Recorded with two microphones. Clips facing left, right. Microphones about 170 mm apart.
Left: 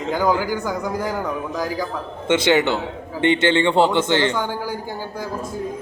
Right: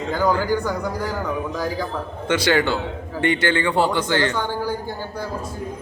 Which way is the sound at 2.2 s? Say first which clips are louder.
Left 2 dB; 25° left (ahead or behind).